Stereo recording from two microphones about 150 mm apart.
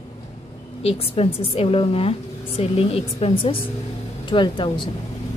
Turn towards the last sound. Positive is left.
turn(degrees=30)  # may be behind; listen again after turning